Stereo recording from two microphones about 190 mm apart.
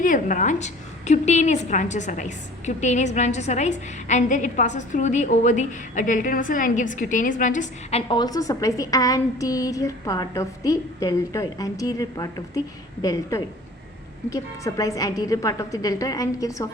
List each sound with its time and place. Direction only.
0.0 s a woman's voice: 40° left (ahead or behind); by 16.6 s 20° left (ahead or behind)